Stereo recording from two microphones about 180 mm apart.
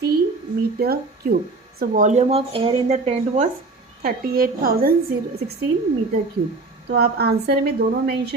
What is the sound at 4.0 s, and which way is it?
A woman's voice, 55° right (ahead or behind).